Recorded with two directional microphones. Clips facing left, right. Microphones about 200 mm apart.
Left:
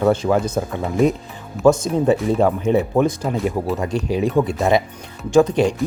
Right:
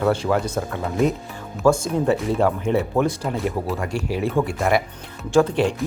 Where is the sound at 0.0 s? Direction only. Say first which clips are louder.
Left 3 dB; 20° left (ahead or behind).